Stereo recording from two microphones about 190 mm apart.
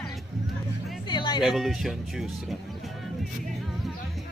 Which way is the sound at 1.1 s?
25° left (ahead or behind).